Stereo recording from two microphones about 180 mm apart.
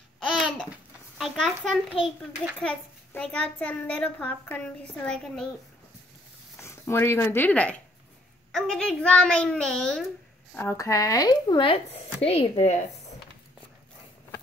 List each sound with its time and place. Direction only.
0.3 s babbling: centre (ahead or behind)
1.1 s a sound: centre (ahead or behind)
2.6 s a child's voice: 5° left (ahead or behind)
6.6 s a child's voice: 15° left (ahead or behind); by 13.1 s 40° left (ahead or behind)